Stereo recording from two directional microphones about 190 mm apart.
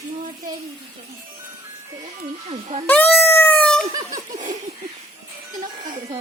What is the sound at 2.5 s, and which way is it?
Speech, 35° right (ahead or behind).